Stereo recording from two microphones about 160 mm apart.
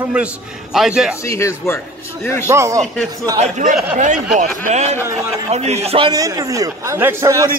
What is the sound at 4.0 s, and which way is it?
Speech, 50° right (ahead or behind).